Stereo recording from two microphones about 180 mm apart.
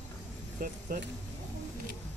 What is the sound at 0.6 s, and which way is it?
Speech, 50° right (ahead or behind).